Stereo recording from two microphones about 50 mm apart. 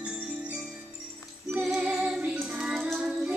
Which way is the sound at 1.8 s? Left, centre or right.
Right.